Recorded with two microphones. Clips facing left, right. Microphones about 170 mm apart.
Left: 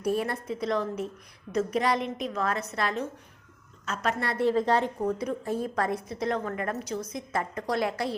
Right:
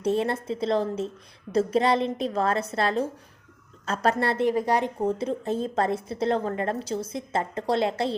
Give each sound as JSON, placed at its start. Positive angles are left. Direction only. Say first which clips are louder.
{"t": 0.0, "sound": "a woman's voice", "louder": "right 3 dB", "side_deg": -25}
{"t": 4.4, "sound": "speech", "louder": "left 2 dB", "side_deg": -15}
{"t": 4.9, "sound": "a woman's voice", "louder": "right 3 dB", "side_deg": -25}